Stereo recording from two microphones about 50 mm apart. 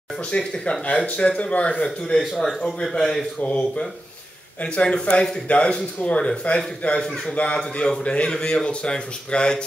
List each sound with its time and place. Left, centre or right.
0.3 s a man's voice: centre
2.0 s a man's voice: centre
3.3 s speech: left